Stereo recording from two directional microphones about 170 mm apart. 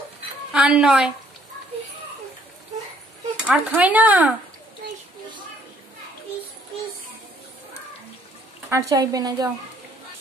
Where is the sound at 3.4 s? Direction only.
5° right (ahead or behind).